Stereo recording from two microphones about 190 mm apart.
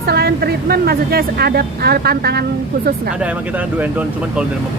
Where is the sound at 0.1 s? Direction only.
55° right (ahead or behind).